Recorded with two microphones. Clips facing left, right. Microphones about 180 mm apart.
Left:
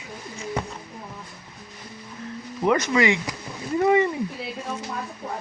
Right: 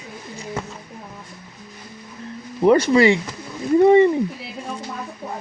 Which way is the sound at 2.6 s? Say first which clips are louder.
Right 7 dB; 30° right (ahead or behind).